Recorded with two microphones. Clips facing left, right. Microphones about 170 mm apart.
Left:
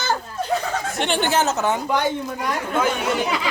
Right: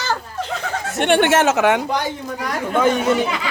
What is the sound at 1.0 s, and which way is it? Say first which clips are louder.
Speech: right 7 dB; 70° right (ahead or behind).